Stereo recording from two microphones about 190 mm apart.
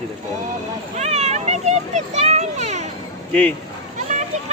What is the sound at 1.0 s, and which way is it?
A child's voice, 35° right (ahead or behind).